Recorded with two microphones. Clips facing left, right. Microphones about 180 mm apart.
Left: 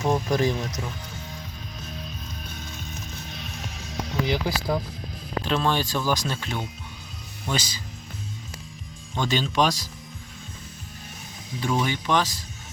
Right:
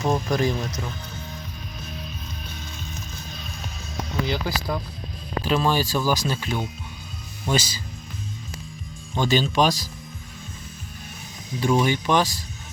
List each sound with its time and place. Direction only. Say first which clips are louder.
0.1 s speech: even; 20° left (ahead or behind)
3.1 s music: even; 65° left (ahead or behind)
4.3 s speech: left 3 dB; 20° left (ahead or behind)
5.4 s speech: right 2 dB; 5° right (ahead or behind)
9.1 s speech: right 3 dB; 5° right (ahead or behind)
11.6 s speech: right 5 dB; 15° right (ahead or behind)